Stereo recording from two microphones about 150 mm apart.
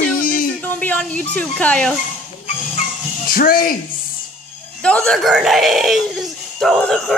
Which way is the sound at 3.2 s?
75° left (ahead or behind).